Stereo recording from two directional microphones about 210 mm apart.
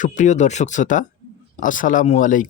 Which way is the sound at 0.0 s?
35° left (ahead or behind).